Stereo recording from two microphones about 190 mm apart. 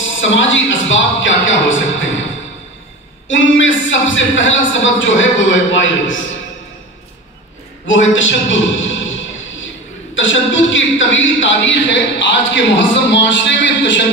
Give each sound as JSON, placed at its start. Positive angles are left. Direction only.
{"t": 0.2, "sound": "a man's voice", "side_deg": 80}
{"t": 3.3, "sound": "a man's voice", "side_deg": 80}
{"t": 7.8, "sound": "a man's voice", "side_deg": 85}